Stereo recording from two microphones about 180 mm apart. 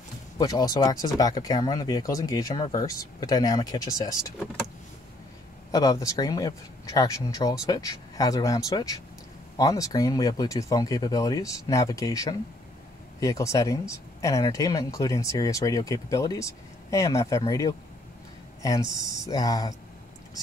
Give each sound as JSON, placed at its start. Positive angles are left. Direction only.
{"t": 0.4, "sound": "speech", "side_deg": 20}
{"t": 5.7, "sound": "speech", "side_deg": 20}